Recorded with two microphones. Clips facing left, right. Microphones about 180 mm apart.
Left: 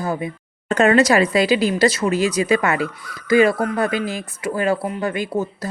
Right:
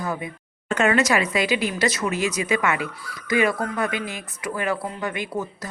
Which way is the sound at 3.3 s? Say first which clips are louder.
Left 6 dB; 30° left (ahead or behind).